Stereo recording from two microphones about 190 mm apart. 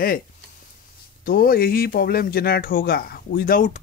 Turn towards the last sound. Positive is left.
turn(degrees=45)  # may be behind; listen again after turning